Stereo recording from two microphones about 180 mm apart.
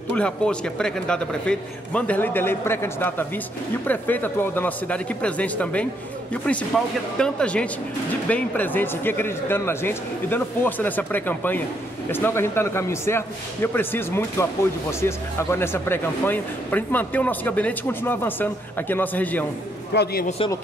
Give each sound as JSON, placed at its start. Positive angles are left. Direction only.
{"t": 0.1, "sound": "a man's voice", "side_deg": 5}
{"t": 7.2, "sound": "a man's voice", "side_deg": 5}
{"t": 19.9, "sound": "a man's voice", "side_deg": 65}